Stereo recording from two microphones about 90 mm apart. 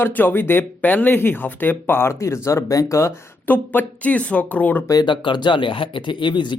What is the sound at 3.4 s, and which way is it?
Speech, 20° left (ahead or behind).